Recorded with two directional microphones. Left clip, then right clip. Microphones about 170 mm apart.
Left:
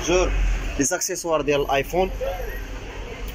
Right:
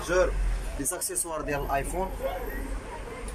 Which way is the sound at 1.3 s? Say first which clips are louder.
Left 10 dB; 20° left (ahead or behind).